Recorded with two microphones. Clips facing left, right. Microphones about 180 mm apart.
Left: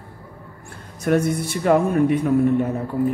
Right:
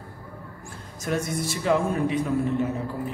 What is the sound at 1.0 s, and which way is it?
Speech, 60° left (ahead or behind).